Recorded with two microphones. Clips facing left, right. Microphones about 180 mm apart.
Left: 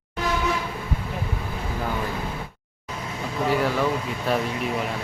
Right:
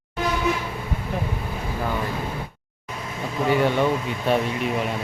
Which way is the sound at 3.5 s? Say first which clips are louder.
Right 3 dB; centre (ahead or behind).